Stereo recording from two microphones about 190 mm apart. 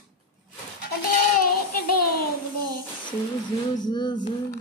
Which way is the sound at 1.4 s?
50° left (ahead or behind).